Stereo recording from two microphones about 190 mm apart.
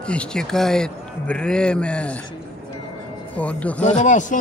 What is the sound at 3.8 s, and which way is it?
Speech, 40° left (ahead or behind).